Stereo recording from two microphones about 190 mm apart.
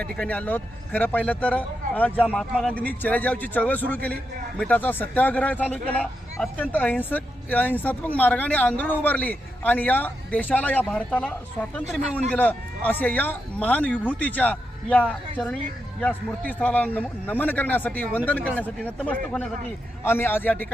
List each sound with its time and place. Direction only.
0.0 s a man's voice: 5° left (ahead or behind)